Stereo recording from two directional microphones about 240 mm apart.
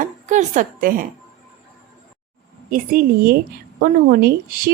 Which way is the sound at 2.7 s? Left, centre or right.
Right.